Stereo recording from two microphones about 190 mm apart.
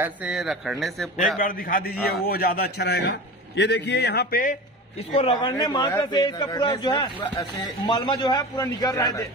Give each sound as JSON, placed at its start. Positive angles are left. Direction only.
{"t": 0.0, "sound": "a man's voice", "side_deg": -5}
{"t": 1.4, "sound": "a man's voice", "side_deg": 50}
{"t": 5.1, "sound": "a man's voice", "side_deg": 30}